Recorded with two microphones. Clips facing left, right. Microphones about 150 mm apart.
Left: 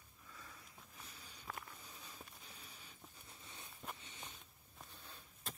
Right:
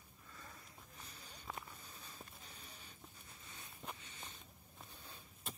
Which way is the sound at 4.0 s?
20° left (ahead or behind).